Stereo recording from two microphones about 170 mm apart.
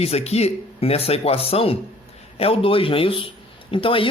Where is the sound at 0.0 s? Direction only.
35° left (ahead or behind).